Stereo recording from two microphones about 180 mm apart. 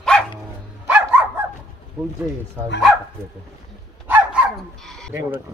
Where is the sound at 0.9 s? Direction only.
10° right (ahead or behind).